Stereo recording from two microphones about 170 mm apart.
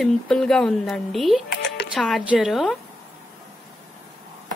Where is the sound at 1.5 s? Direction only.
90° left.